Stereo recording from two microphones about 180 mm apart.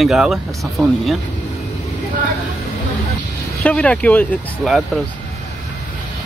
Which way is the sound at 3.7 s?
5° left (ahead or behind).